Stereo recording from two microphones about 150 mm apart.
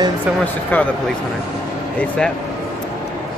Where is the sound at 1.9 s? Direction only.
10° left (ahead or behind).